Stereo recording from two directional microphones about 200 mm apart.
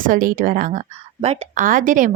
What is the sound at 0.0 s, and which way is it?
A woman's voice, 45° right (ahead or behind).